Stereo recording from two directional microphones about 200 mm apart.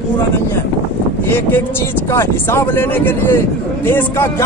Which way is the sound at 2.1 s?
10° left (ahead or behind).